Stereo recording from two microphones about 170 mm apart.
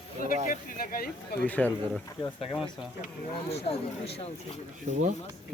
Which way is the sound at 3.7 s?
40° left (ahead or behind).